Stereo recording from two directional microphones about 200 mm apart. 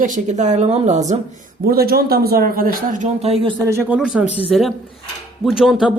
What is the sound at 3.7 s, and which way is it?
A woman's voice, 10° right (ahead or behind).